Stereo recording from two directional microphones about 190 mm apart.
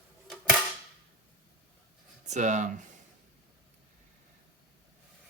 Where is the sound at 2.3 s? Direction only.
40° right (ahead or behind).